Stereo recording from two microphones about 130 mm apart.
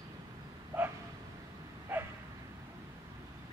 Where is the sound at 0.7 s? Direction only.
15° right (ahead or behind).